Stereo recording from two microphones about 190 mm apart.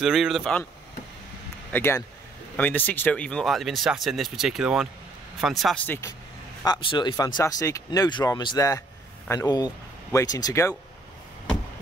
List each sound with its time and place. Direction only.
0.0 s speech: centre (ahead or behind)
1.7 s speech: 10° left (ahead or behind)
5.9 s speech: 15° left (ahead or behind)